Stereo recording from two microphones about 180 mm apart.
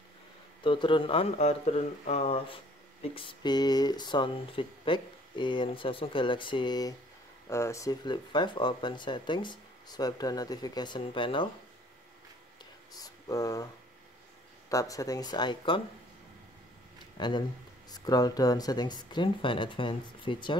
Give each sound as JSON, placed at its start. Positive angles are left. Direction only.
{"t": 0.7, "sound": "speech", "side_deg": 25}
{"t": 12.9, "sound": "speech", "side_deg": 20}
{"t": 14.7, "sound": "speech", "side_deg": 20}
{"t": 17.2, "sound": "speech", "side_deg": 25}